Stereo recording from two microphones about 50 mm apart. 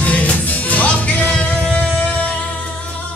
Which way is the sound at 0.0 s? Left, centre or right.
Left.